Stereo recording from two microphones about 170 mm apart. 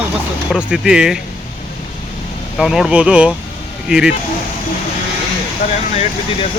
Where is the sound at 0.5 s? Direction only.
5° right (ahead or behind).